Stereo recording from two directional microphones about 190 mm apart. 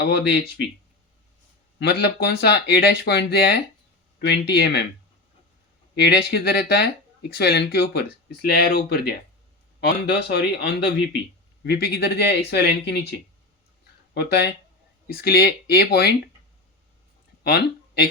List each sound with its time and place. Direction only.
0.0 s speech: 65° left (ahead or behind)
1.8 s speech: 60° left (ahead or behind)
6.0 s speech: 60° left (ahead or behind)
17.4 s speech: 55° left (ahead or behind)